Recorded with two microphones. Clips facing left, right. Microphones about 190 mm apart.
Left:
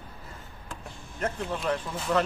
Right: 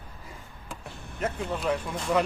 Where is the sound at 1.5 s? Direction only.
5° right (ahead or behind).